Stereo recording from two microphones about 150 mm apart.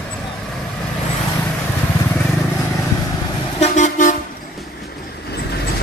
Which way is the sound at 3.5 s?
55° left (ahead or behind).